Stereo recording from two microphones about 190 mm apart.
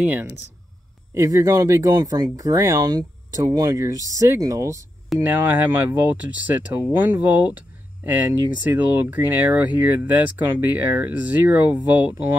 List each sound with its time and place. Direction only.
0.0 s speech: 10° right (ahead or behind)